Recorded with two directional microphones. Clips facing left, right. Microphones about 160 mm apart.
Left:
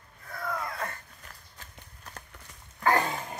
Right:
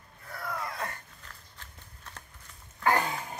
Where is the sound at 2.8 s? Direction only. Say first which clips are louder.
Left 1 dB; centre (ahead or behind).